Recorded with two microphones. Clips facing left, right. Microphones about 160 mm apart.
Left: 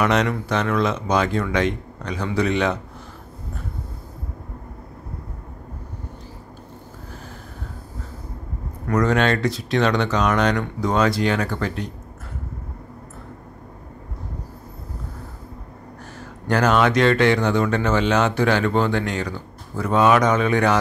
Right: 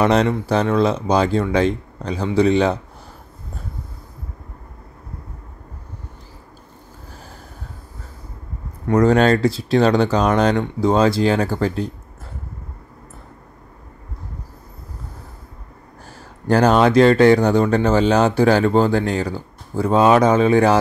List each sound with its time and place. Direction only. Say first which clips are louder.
0.0 s speech: right 4 dB; 30° right (ahead or behind)
8.8 s speech: right 5 dB; 30° right (ahead or behind)
16.2 s speech: right 5 dB; 35° right (ahead or behind)